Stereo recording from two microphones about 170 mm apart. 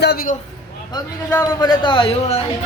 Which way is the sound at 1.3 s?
25° left (ahead or behind).